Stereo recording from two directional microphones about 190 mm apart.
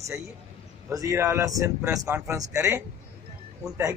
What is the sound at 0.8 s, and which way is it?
Speech, 15° right (ahead or behind).